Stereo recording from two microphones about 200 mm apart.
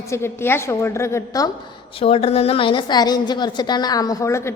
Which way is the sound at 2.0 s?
30° left (ahead or behind).